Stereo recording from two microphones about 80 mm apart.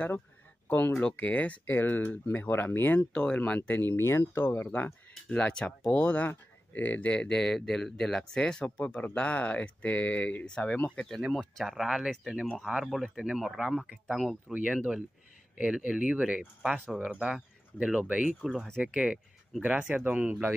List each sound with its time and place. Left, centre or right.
0.7 s speech: left
3.1 s speech: centre; by 4.6 s left
5.3 s speech: centre
11.1 s speech: centre
14.5 s speech: centre
19.6 s speech: centre